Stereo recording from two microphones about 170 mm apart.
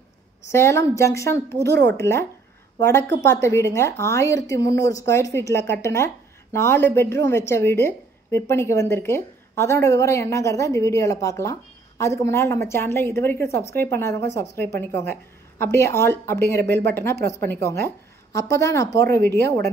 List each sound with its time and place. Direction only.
0.5 s a woman's voice: 15° left (ahead or behind)
1.7 s speech: 75° right (ahead or behind)
2.0 s a woman's voice: 15° left (ahead or behind)